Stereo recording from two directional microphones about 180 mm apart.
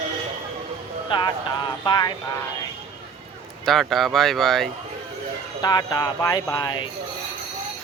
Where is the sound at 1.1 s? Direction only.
25° left (ahead or behind).